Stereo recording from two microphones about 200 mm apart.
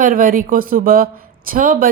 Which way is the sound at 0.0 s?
45° right (ahead or behind).